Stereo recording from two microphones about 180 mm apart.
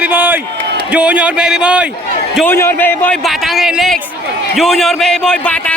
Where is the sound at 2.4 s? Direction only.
10° left (ahead or behind).